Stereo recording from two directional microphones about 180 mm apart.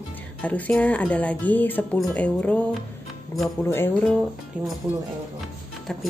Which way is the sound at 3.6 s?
15° left (ahead or behind).